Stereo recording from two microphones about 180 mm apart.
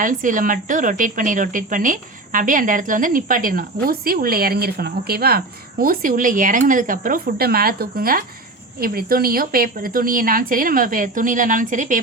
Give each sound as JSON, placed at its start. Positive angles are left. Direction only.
{"t": 0.0, "sound": "a woman's voice", "side_deg": -45}